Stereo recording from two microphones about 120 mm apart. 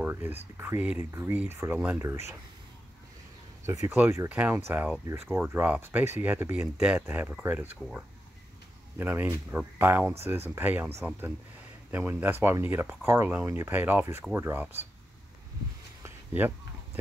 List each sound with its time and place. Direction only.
0.0 s speech: 15° right (ahead or behind)
3.6 s speech: 25° right (ahead or behind)
4.3 s speech: 15° right (ahead or behind)
16.0 s a sound: 15° right (ahead or behind)